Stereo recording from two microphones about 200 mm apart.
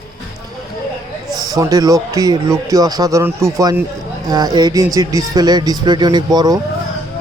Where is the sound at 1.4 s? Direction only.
15° right (ahead or behind).